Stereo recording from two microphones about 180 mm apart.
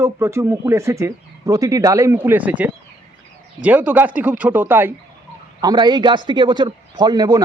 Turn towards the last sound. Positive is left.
turn(degrees=-20)  # may be behind; listen again after turning